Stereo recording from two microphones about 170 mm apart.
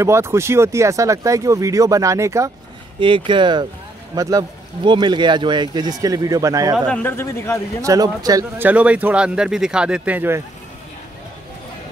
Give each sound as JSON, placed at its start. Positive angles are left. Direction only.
{"t": 0.0, "sound": "speech", "side_deg": -15}
{"t": 3.3, "sound": "speech", "side_deg": -30}
{"t": 6.9, "sound": "speech", "side_deg": 10}
{"t": 7.8, "sound": "speech", "side_deg": -20}
{"t": 8.6, "sound": "speech", "side_deg": -10}